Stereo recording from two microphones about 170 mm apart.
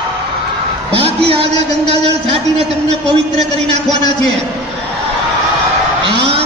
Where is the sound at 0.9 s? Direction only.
35° right (ahead or behind).